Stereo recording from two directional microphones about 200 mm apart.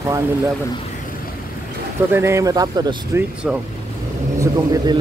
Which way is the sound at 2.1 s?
15° right (ahead or behind).